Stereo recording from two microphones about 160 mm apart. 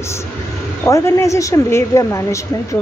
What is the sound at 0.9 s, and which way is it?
A woman's voice, 15° left (ahead or behind).